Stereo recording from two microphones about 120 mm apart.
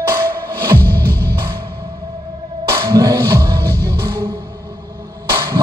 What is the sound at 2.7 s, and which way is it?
Music, 25° right (ahead or behind).